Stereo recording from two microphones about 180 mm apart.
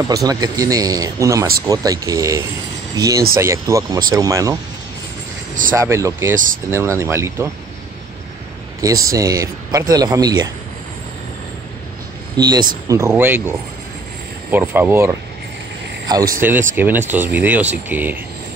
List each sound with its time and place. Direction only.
0.1 s speech: 20° right (ahead or behind)
5.8 s speech: 15° right (ahead or behind)
8.8 s speech: 20° right (ahead or behind)
12.4 s speech: 25° right (ahead or behind)